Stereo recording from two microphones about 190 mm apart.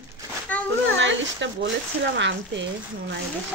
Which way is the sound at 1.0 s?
75° right (ahead or behind).